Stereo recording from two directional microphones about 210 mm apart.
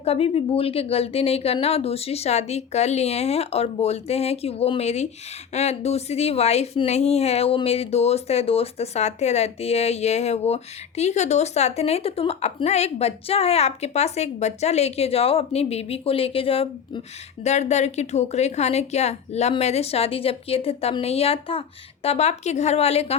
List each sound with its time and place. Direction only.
0.0 s a woman's voice: 30° left (ahead or behind)